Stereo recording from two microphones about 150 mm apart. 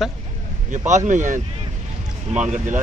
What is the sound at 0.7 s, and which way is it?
Speech, 55° right (ahead or behind).